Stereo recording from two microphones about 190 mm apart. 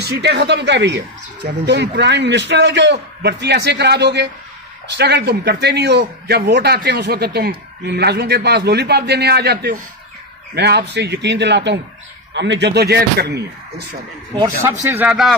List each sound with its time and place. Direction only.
0.0 s a man's voice: 60° right (ahead or behind)
14.3 s speech: 15° right (ahead or behind)